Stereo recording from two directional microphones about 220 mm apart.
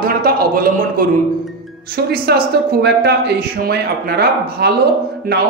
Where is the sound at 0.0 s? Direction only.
40° right (ahead or behind).